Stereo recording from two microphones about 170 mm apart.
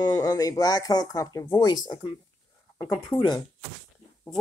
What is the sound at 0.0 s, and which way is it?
Speech, 20° left (ahead or behind).